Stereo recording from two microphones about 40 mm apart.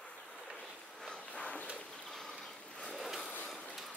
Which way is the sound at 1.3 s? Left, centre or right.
Left.